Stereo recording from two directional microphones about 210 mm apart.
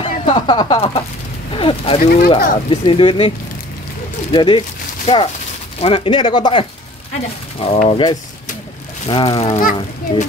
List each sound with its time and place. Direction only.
0.0 s speech: 25° left (ahead or behind)
1.5 s a sound: 25° left (ahead or behind)
2.0 s speech: 50° left (ahead or behind)
2.7 s speech: 25° left (ahead or behind)
9.6 s a child's voice: 40° left (ahead or behind)